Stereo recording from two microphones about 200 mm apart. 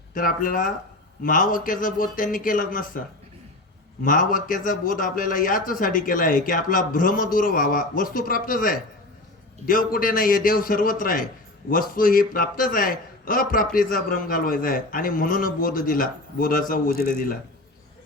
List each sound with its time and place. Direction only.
0.1 s a man's voice: 45° left (ahead or behind)
4.0 s a man's voice: 45° left (ahead or behind)